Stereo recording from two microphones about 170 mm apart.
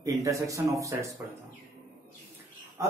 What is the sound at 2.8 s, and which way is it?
Speech, 20° right (ahead or behind).